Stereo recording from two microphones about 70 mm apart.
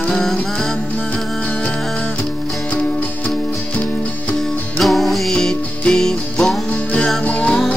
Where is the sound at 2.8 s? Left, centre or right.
Centre.